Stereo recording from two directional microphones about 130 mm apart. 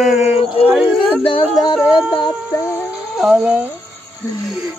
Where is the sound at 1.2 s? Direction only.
40° left (ahead or behind).